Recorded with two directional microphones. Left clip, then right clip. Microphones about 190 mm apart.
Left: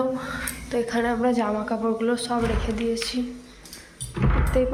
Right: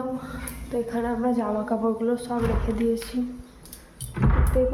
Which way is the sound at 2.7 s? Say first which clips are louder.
Even; 20° right (ahead or behind).